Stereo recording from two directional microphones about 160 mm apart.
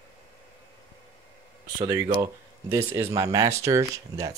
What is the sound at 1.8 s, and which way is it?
Speech, 20° right (ahead or behind).